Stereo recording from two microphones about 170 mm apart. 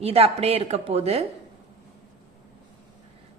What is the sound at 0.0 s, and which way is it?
Speech, 35° right (ahead or behind).